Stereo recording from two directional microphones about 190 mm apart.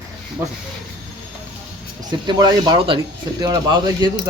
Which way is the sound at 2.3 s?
20° right (ahead or behind).